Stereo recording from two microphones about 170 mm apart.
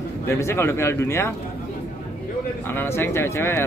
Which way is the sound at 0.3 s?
15° left (ahead or behind).